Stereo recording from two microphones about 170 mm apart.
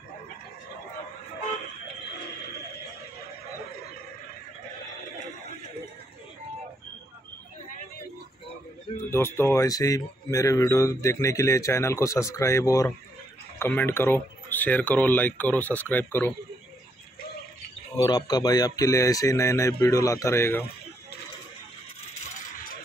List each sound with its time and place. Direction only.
8.9 s speech: 15° left (ahead or behind)
17.9 s speech: 25° left (ahead or behind)
22.3 s coin: 55° left (ahead or behind)